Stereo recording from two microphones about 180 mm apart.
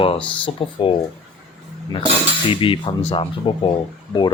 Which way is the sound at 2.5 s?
30° left (ahead or behind).